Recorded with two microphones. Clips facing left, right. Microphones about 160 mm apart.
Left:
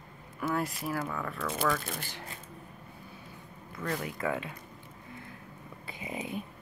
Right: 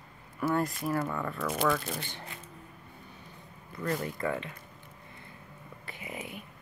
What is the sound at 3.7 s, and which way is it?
Speech, centre (ahead or behind).